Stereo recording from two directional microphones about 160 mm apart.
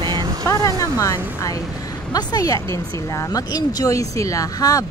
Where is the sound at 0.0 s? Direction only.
25° right (ahead or behind).